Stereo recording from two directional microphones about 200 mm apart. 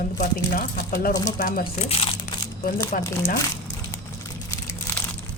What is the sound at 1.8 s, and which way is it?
Speech, 30° left (ahead or behind).